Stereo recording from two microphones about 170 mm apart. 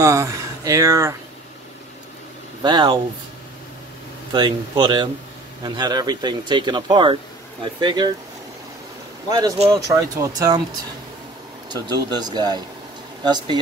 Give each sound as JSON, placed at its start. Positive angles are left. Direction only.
{"t": 0.0, "sound": "speech", "side_deg": -20}
{"t": 2.6, "sound": "speech", "side_deg": -25}
{"t": 4.3, "sound": "speech", "side_deg": -25}
{"t": 9.3, "sound": "speech", "side_deg": -25}
{"t": 11.7, "sound": "speech", "side_deg": -25}